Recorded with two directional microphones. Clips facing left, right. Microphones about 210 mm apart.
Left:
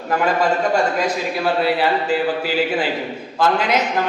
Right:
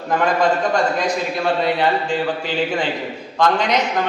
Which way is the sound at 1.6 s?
5° left (ahead or behind).